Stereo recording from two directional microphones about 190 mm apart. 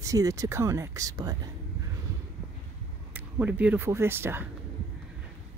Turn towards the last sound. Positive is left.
turn(degrees=-10)  # may be behind; listen again after turning